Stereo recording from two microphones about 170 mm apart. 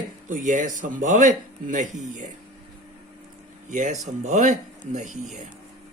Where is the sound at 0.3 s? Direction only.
50° right (ahead or behind).